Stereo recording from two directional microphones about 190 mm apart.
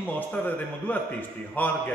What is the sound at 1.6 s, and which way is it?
Speech, 10° left (ahead or behind).